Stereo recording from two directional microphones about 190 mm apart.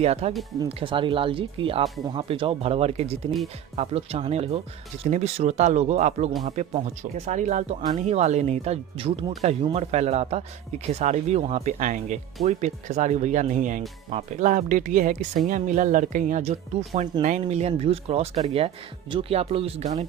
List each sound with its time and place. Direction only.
0.0 s speech: 35° right (ahead or behind)